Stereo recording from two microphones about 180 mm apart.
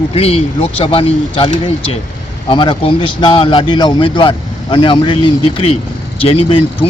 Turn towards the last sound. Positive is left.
turn(degrees=30)  # may be behind; listen again after turning